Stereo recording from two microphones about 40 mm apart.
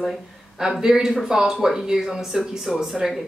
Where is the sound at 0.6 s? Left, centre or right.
Centre.